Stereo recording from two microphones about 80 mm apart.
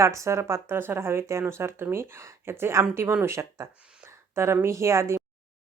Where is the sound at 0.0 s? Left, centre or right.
Right.